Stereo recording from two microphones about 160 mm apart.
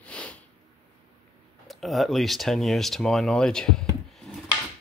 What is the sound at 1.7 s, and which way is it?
Speech, centre (ahead or behind).